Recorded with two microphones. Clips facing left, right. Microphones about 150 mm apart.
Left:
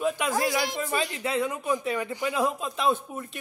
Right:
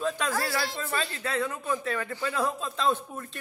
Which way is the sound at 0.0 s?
15° left (ahead or behind).